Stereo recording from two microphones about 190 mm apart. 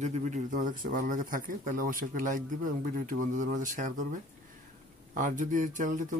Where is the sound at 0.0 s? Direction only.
40° right (ahead or behind).